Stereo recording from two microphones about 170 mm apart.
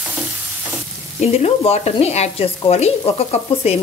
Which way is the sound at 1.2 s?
40° left (ahead or behind).